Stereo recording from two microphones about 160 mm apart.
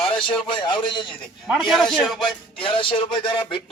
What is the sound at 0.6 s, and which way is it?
Speech, 30° left (ahead or behind).